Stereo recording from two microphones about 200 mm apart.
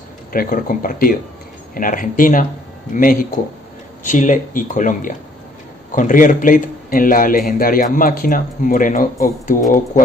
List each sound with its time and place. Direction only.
0.3 s a man's voice: 45° left (ahead or behind)